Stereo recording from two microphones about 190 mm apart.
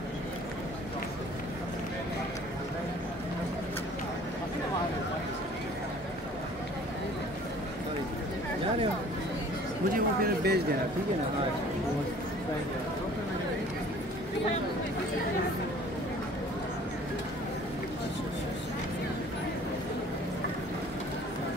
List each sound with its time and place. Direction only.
9.9 s speech: 55° right (ahead or behind)